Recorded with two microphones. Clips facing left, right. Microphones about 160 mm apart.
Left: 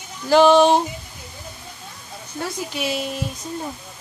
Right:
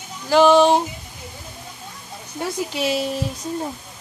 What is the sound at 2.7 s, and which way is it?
Speech, 30° right (ahead or behind).